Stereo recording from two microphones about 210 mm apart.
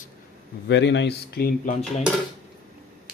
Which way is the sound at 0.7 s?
55° left (ahead or behind).